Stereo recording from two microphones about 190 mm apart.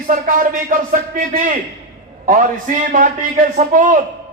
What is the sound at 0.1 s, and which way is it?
A man's voice, 45° right (ahead or behind).